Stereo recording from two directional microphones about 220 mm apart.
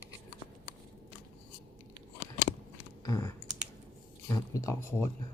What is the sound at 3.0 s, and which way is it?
Typing, 15° left (ahead or behind).